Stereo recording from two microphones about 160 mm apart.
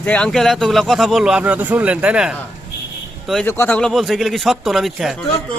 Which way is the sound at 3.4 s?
15° left (ahead or behind).